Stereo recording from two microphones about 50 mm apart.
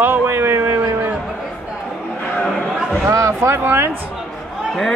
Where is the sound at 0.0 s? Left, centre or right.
Right.